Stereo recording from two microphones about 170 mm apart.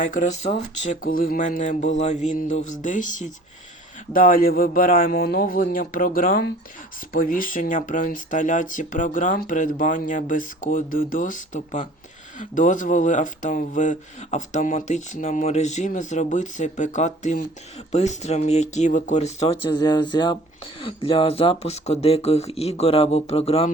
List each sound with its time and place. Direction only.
0.1 s speech: 50° left (ahead or behind)
19.8 s speech: 25° left (ahead or behind)